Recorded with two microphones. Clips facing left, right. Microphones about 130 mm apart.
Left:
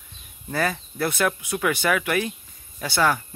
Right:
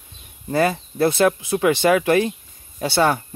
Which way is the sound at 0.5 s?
25° right (ahead or behind).